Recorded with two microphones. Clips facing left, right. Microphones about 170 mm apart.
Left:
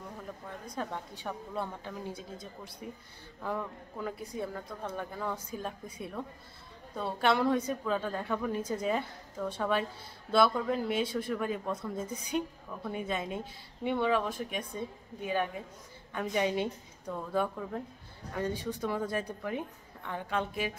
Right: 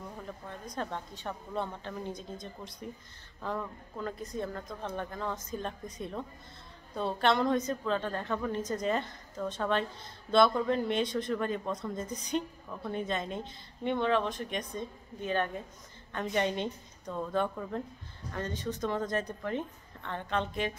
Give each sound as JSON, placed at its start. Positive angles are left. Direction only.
{"t": 0.7, "sound": "speech", "side_deg": 10}